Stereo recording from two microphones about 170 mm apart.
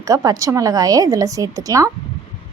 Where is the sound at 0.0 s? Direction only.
20° right (ahead or behind).